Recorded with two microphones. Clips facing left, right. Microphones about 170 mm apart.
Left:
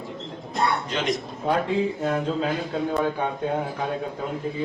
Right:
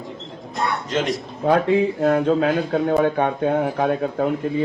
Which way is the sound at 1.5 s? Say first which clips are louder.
Right 6 dB; 75° right (ahead or behind).